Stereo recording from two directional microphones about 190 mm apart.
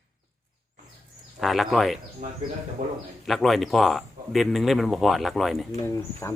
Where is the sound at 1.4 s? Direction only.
Centre (ahead or behind).